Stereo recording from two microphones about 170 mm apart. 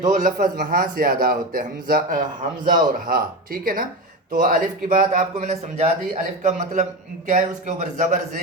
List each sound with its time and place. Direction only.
0.1 s a man's voice: 50° right (ahead or behind)